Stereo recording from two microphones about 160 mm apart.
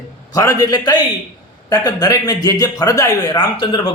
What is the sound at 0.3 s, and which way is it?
Speech, 20° left (ahead or behind).